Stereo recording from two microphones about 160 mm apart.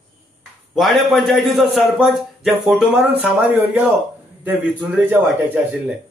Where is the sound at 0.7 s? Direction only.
Centre (ahead or behind).